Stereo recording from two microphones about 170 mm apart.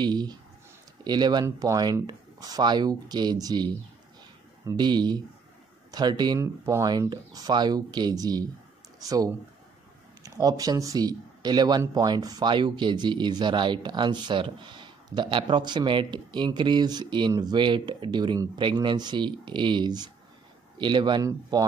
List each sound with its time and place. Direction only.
0.0 s speech: 25° right (ahead or behind)